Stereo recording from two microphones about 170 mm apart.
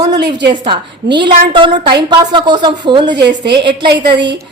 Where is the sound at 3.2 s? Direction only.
80° right.